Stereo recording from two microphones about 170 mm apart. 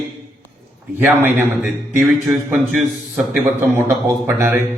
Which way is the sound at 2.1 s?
Centre (ahead or behind).